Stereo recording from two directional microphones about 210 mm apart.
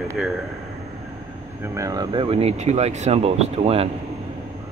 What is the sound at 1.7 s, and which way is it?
Speech, 15° right (ahead or behind).